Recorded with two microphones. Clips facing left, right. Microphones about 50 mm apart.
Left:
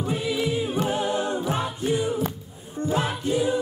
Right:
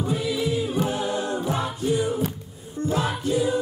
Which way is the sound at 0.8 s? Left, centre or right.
Left.